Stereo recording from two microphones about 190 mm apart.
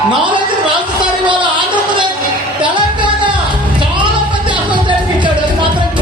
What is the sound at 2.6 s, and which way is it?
Music, 25° right (ahead or behind).